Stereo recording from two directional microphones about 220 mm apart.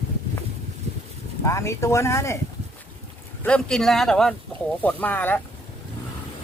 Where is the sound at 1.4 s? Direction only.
15° left (ahead or behind).